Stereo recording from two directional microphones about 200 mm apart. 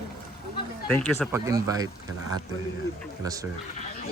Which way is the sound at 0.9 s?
10° left (ahead or behind).